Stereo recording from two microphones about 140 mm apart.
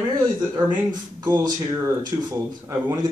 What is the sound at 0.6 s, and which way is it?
Speech, 30° right (ahead or behind).